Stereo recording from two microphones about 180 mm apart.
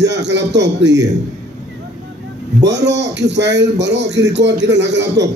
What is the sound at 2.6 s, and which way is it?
A man's voice, 75° right (ahead or behind).